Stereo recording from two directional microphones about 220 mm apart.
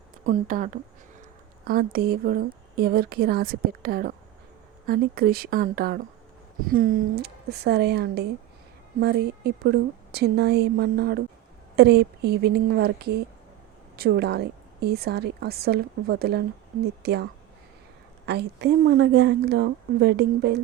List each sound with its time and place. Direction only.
0.3 s speech: 35° right (ahead or behind)
18.3 s speech: 50° right (ahead or behind)